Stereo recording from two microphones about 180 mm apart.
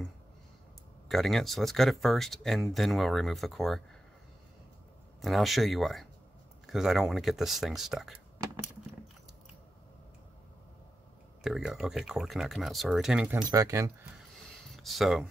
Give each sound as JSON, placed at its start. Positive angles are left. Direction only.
{"t": 1.0, "sound": "speech", "side_deg": 0}
{"t": 5.2, "sound": "speech", "side_deg": 0}
{"t": 11.4, "sound": "speech", "side_deg": -5}
{"t": 13.4, "sound": "speech", "side_deg": -20}
{"t": 14.8, "sound": "speech", "side_deg": 0}